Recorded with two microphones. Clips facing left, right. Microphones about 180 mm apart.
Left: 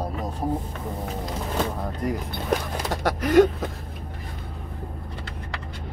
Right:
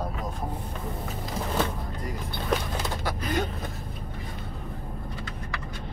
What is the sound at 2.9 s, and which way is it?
Speech, 80° left.